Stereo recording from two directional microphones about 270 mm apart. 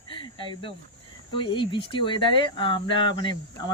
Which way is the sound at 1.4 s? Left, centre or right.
Centre.